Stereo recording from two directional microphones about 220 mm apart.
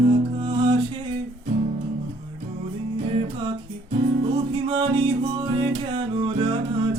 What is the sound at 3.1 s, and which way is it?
Music, 25° right (ahead or behind).